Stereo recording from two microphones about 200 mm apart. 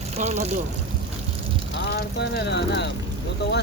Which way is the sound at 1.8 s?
55° left (ahead or behind).